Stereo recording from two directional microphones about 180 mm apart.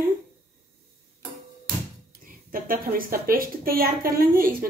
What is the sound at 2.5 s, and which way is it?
A woman's voice, 50° right (ahead or behind).